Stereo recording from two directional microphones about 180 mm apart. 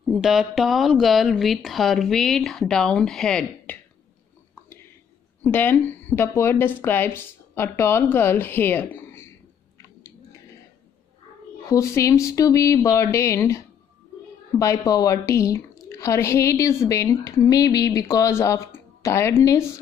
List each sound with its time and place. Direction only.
0.0 s speech: 5° right (ahead or behind)
5.4 s speech: 10° left (ahead or behind)
11.7 s speech: 15° left (ahead or behind)